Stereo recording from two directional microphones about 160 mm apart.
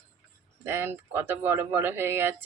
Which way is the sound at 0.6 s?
15° right (ahead or behind).